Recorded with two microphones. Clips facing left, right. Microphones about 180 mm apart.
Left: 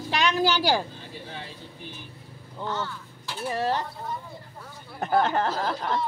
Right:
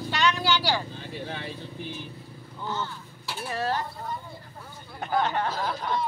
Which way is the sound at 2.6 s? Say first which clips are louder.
Left 2 dB; 30° left (ahead or behind).